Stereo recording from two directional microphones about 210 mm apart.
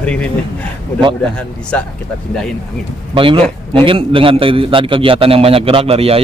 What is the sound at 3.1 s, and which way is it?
A man's voice, 25° right (ahead or behind).